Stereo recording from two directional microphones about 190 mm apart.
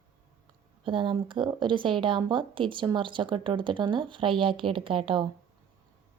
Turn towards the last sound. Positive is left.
turn(degrees=-25)  # may be behind; listen again after turning